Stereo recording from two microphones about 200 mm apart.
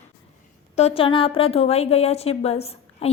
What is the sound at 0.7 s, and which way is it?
A woman's voice, 30° left (ahead or behind).